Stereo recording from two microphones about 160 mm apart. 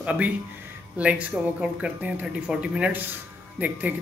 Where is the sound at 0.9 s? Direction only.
10° right (ahead or behind).